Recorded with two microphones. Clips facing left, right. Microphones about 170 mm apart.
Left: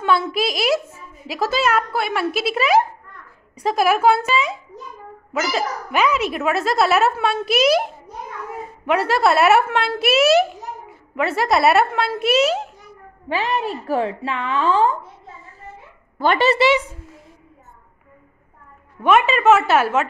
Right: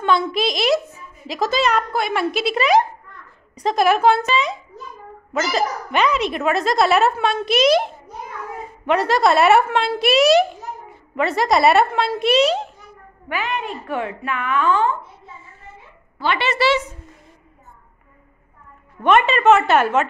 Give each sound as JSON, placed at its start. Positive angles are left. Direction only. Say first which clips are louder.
{"t": 0.0, "sound": "a woman's voice", "louder": "right 1 dB", "side_deg": 5}
{"t": 13.3, "sound": "a woman's voice", "louder": "left 3 dB", "side_deg": 35}
{"t": 16.2, "sound": "speech", "louder": "left 5 dB", "side_deg": 45}
{"t": 16.5, "sound": "speech", "louder": "left 2 dB", "side_deg": 15}
{"t": 19.0, "sound": "a woman's voice", "louder": "even", "side_deg": 5}